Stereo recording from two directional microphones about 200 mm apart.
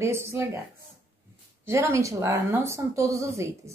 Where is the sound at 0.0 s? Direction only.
15° right (ahead or behind).